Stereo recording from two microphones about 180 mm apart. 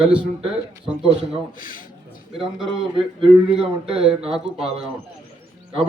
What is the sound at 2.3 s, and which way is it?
A man's voice, centre (ahead or behind).